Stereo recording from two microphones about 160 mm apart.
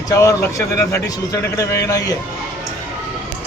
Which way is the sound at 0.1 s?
20° left (ahead or behind).